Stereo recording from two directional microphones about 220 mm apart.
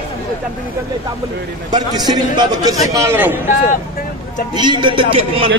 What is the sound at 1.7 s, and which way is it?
A man's voice, 20° right (ahead or behind).